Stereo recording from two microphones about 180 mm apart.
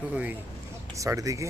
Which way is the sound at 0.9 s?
20° right (ahead or behind).